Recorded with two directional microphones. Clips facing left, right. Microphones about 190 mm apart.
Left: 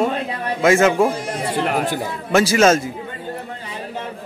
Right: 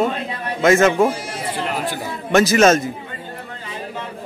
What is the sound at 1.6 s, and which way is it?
Speech, 55° left (ahead or behind).